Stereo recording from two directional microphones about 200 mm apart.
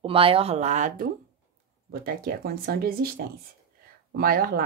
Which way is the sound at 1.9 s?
50° right (ahead or behind).